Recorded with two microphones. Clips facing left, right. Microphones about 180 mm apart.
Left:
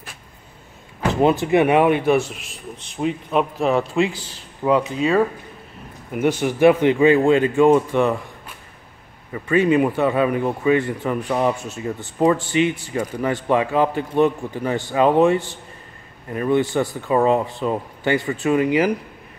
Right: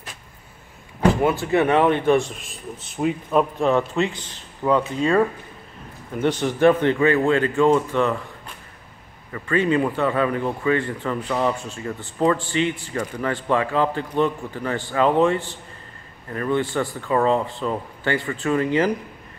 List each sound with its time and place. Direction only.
1.2 s a man's voice: 20° left (ahead or behind)
9.3 s a man's voice: 15° left (ahead or behind)